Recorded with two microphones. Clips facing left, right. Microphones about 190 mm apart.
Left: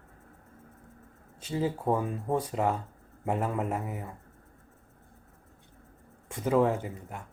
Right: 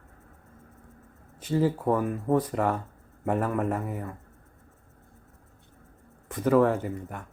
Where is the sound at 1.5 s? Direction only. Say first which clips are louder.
Right 4 dB; 20° left (ahead or behind).